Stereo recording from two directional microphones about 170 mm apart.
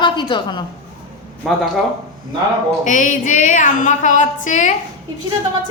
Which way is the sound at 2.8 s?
50° left (ahead or behind).